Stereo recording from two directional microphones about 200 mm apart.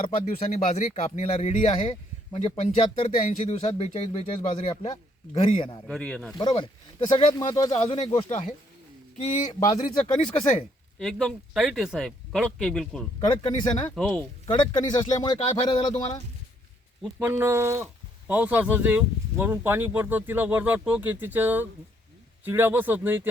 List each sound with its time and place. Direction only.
0.3 s speech: 30° left (ahead or behind)
5.9 s speech: 5° left (ahead or behind)
6.3 s speech: 20° left (ahead or behind)
8.3 s speech: 35° left (ahead or behind)
11.0 s speech: centre (ahead or behind)
13.3 s speech: 25° left (ahead or behind)
13.9 s speech: 5° left (ahead or behind)
14.4 s speech: 20° left (ahead or behind)
17.0 s speech: 10° right (ahead or behind)